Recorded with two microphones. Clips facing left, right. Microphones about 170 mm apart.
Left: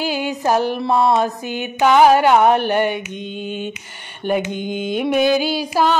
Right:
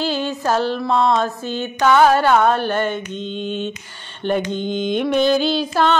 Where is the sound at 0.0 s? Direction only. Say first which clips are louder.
Left 1 dB; 10° left (ahead or behind).